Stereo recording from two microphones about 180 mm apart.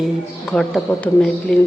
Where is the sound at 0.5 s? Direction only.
5° left (ahead or behind).